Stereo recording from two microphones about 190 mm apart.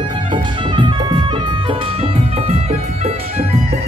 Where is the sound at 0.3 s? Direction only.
25° right (ahead or behind).